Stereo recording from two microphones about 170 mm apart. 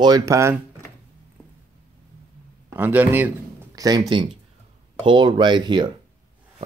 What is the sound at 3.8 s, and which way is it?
Speech, 25° right (ahead or behind).